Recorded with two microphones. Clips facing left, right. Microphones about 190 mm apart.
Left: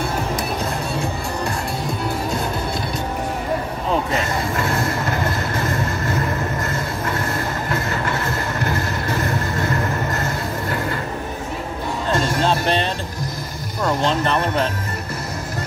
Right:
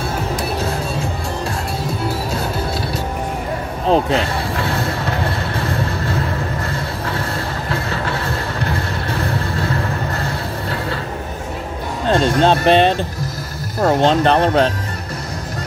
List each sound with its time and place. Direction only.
4.1 s vehicle: 70° right (ahead or behind)
12.1 s music: 70° right (ahead or behind)
13.7 s speech: 50° right (ahead or behind)
14.2 s speech: 70° right (ahead or behind)